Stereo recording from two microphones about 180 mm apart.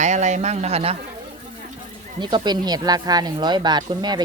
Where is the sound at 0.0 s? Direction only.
40° right (ahead or behind).